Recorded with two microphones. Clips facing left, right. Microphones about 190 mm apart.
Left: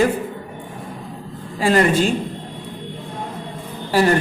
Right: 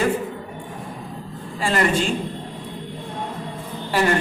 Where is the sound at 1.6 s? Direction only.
40° left (ahead or behind).